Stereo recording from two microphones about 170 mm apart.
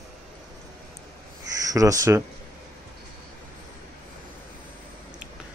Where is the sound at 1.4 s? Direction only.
20° right (ahead or behind).